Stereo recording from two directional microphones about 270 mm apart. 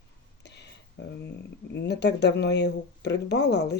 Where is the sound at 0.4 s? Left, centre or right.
Left.